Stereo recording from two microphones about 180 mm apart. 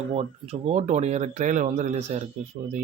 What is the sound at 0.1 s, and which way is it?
Speech, 35° right (ahead or behind).